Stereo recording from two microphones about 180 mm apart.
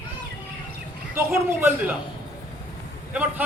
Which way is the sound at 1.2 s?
15° right (ahead or behind).